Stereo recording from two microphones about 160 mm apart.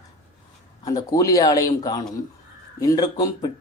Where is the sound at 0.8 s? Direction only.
25° left (ahead or behind).